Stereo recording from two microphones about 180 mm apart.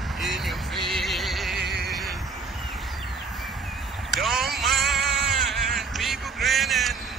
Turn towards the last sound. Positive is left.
turn(degrees=0)  # may be behind; listen again after turning